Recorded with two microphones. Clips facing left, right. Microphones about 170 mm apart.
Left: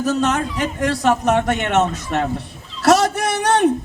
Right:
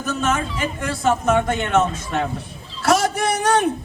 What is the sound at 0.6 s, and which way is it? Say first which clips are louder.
Speech: left 3 dB; 75° left (ahead or behind).